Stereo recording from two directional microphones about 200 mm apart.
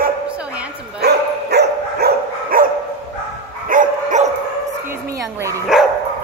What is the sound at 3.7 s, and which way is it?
Dog, 40° right (ahead or behind).